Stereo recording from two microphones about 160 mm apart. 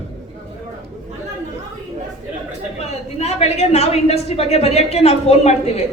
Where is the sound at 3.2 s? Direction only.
40° left (ahead or behind).